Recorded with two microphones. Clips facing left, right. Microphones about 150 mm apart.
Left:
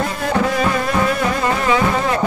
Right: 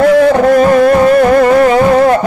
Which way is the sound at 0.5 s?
50° right (ahead or behind).